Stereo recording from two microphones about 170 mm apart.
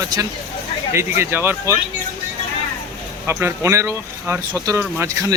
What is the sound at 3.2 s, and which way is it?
Speech, 15° right (ahead or behind).